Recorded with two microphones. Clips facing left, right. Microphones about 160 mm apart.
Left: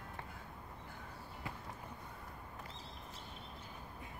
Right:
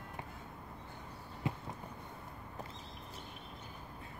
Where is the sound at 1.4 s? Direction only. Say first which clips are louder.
Right 9 dB; 20° right (ahead or behind).